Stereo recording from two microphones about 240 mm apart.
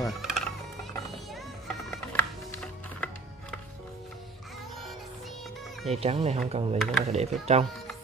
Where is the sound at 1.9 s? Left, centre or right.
Centre.